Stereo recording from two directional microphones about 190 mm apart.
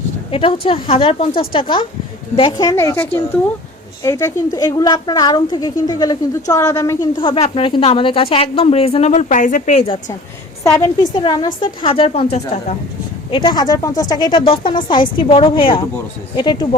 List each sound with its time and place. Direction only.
0.3 s a woman's voice: 30° left (ahead or behind)
7.2 s a woman's voice: 30° left (ahead or behind)
10.6 s a woman's voice: 15° left (ahead or behind)